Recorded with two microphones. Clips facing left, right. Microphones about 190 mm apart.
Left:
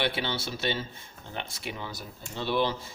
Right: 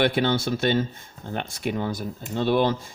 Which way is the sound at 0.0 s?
50° right (ahead or behind).